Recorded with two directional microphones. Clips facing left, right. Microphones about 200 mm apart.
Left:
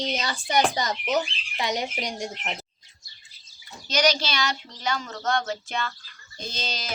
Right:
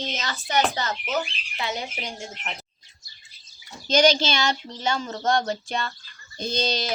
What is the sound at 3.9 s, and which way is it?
Speech, 25° right (ahead or behind).